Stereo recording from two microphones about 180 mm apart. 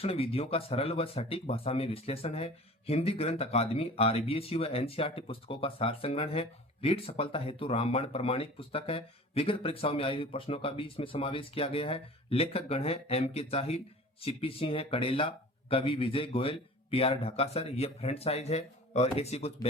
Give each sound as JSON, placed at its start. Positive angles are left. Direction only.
{"t": 0.0, "sound": "speech", "side_deg": 35}